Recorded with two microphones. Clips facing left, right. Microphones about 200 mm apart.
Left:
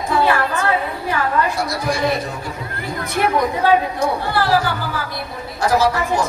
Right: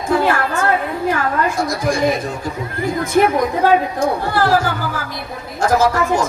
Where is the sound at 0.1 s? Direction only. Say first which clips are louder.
Right 1 dB; 50° right (ahead or behind).